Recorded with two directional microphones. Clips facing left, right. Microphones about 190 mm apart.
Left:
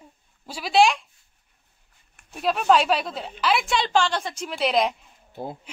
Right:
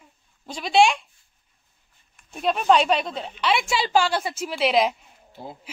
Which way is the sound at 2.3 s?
Centre (ahead or behind).